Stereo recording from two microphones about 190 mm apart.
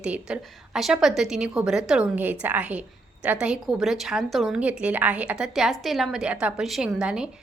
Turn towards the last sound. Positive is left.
turn(degrees=-5)  # may be behind; listen again after turning